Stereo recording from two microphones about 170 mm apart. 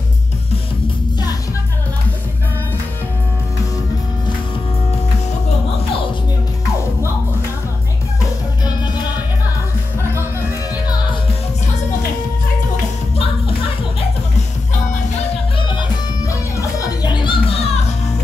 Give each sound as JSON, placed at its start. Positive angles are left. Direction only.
{"t": 16.3, "sound": "music", "side_deg": 20}